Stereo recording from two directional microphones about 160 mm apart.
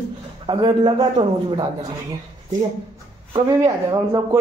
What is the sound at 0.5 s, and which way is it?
Speech, 30° right (ahead or behind).